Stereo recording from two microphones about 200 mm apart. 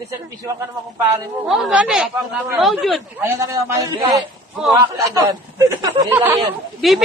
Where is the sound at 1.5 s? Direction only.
5° right (ahead or behind).